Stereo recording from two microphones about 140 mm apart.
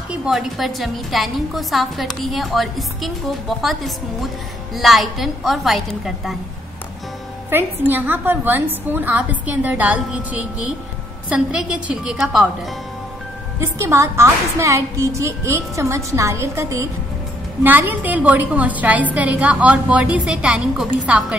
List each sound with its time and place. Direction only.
0.1 s a woman's voice: 5° right (ahead or behind)
7.4 s a woman's voice: 15° right (ahead or behind)
13.6 s a woman's voice: 20° right (ahead or behind)